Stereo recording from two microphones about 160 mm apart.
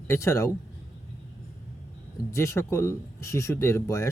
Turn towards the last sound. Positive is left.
turn(degrees=20)  # may be behind; listen again after turning